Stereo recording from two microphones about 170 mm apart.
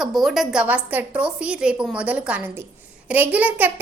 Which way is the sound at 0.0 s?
Centre (ahead or behind).